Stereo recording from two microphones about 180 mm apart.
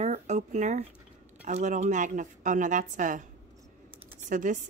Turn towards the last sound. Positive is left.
turn(degrees=-45)  # may be behind; listen again after turning